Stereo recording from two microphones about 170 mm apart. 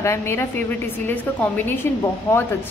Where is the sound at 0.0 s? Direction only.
15° left (ahead or behind).